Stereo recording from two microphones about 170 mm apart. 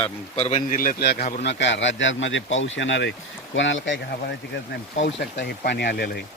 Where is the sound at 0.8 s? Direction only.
60° left (ahead or behind).